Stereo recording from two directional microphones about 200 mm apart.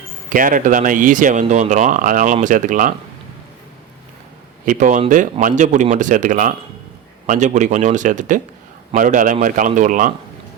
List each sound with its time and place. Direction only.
0.3 s speech: 40° right (ahead or behind)
4.6 s speech: 40° right (ahead or behind)